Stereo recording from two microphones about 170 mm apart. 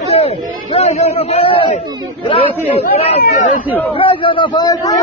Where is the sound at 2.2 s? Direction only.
30° left (ahead or behind).